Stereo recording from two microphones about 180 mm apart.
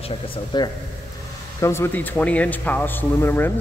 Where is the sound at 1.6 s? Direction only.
15° left (ahead or behind).